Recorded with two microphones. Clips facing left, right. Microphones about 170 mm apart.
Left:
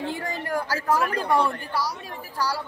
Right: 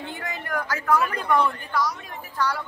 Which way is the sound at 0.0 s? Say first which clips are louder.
Left 4 dB; 35° left (ahead or behind).